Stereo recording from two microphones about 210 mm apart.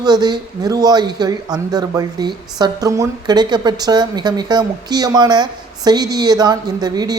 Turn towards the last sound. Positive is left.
turn(degrees=-20)  # may be behind; listen again after turning